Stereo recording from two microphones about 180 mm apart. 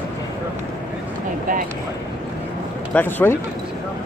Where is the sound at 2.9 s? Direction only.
10° left (ahead or behind).